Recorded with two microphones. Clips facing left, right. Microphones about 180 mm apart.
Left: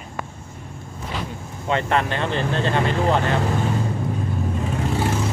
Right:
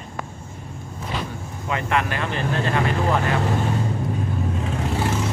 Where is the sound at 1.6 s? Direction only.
30° left (ahead or behind).